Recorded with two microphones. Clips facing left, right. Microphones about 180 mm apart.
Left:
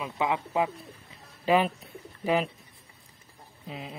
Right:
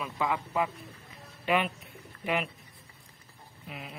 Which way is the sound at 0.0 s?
20° left (ahead or behind).